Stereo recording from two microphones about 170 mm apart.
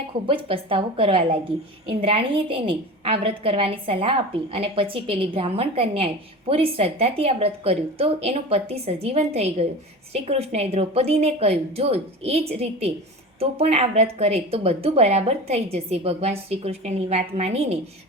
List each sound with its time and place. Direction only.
0.3 s a woman's voice: 30° right (ahead or behind)